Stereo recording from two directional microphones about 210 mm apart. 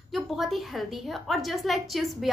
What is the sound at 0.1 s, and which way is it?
A woman's voice, centre (ahead or behind).